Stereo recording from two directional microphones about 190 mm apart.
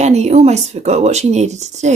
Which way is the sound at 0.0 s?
35° right (ahead or behind).